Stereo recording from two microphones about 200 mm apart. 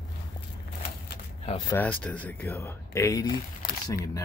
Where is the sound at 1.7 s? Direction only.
10° left (ahead or behind).